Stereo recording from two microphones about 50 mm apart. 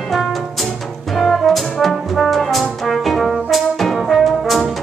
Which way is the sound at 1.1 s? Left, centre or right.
Centre.